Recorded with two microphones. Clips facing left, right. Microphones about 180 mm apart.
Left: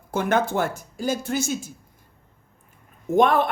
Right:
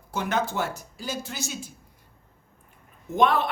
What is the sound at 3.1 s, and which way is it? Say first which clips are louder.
Speech: left 4 dB; 50° left (ahead or behind).